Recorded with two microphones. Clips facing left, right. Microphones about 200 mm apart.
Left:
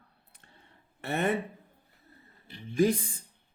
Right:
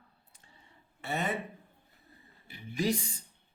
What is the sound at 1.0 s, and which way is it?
Speech, 60° left (ahead or behind).